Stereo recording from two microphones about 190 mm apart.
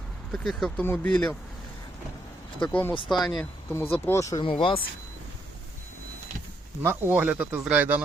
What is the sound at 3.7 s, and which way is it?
Speech, 10° left (ahead or behind).